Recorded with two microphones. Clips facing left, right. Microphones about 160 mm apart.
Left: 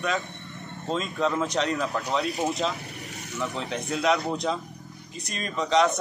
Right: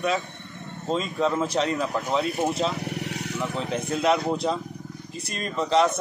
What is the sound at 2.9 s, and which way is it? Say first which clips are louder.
Vehicle: right 9 dB; 75° right (ahead or behind).